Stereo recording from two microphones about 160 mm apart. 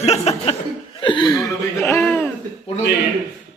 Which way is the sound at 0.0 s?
40° left (ahead or behind).